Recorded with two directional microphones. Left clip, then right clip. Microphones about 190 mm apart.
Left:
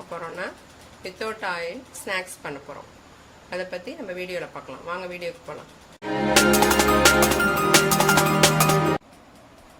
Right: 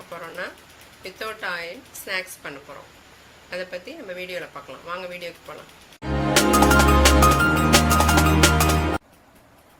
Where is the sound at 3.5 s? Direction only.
55° left (ahead or behind).